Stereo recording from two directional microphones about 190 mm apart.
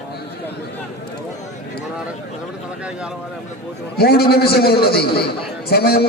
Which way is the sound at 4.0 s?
55° left (ahead or behind).